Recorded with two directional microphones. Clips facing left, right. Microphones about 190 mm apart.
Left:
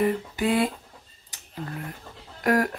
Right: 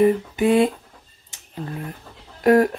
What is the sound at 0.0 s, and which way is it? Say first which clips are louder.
Speech: right 7 dB; 25° right (ahead or behind).